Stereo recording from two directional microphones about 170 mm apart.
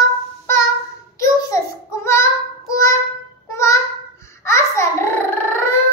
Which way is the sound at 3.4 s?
15° left (ahead or behind).